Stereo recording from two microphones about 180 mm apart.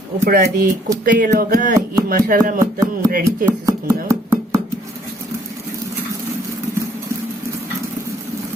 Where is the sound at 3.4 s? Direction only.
15° right (ahead or behind).